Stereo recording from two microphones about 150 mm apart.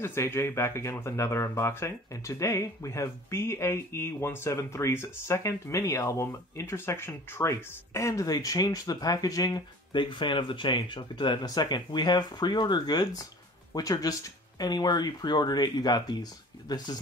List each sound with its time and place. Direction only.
0.0 s speech: 15° left (ahead or behind)